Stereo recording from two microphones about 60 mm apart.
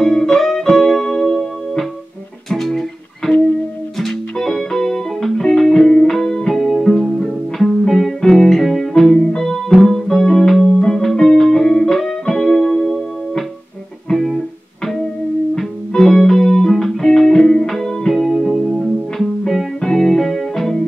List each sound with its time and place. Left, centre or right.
0.0 s music: centre
14.0 s music: centre
15.5 s music: centre
19.4 s music: centre